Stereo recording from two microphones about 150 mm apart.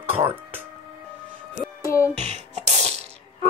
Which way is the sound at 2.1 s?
50° right (ahead or behind).